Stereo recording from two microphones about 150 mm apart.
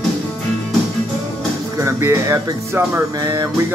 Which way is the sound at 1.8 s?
20° right (ahead or behind).